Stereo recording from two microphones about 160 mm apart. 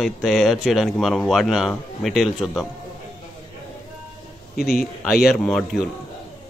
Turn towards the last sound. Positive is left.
turn(degrees=0)  # may be behind; listen again after turning